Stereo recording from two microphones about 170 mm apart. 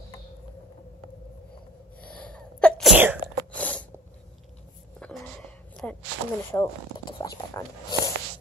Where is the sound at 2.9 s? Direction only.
10° right (ahead or behind).